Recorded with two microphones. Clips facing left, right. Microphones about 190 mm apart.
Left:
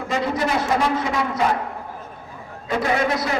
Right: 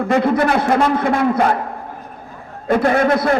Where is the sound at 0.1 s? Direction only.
55° right (ahead or behind).